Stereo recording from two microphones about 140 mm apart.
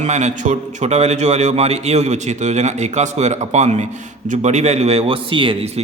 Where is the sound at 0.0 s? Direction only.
55° right (ahead or behind).